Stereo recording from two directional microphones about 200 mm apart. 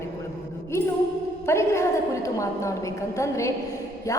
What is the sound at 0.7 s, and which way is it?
A woman's voice, 15° left (ahead or behind).